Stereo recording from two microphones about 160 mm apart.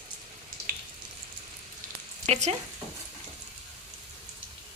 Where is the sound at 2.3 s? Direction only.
45° right (ahead or behind).